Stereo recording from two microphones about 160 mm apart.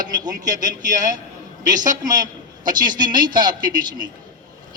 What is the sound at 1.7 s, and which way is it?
Speech, 55° right (ahead or behind).